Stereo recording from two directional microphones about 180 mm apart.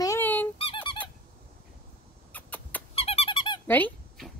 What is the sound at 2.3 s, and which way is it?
Rodents, 10° left (ahead or behind).